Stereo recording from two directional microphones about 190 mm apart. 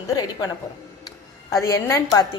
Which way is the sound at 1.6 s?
15° left (ahead or behind).